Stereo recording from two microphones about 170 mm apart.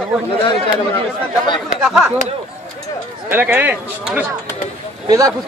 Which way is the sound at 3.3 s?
10° right (ahead or behind).